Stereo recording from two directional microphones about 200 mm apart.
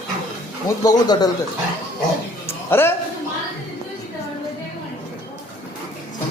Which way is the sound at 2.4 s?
10° left (ahead or behind).